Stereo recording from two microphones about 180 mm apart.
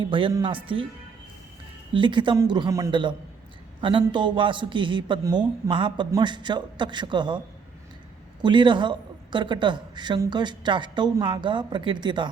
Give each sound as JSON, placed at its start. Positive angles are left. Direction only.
{"t": 0.0, "sound": "a woman's voice", "side_deg": -30}
{"t": 1.9, "sound": "a woman's voice", "side_deg": -25}